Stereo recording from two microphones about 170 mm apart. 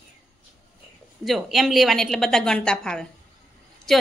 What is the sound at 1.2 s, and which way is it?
A woman's voice, centre (ahead or behind).